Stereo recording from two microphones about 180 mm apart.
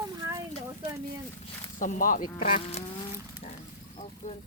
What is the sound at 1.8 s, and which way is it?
Speech, 50° left (ahead or behind).